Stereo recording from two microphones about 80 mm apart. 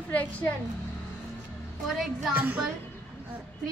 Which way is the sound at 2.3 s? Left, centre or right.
Centre.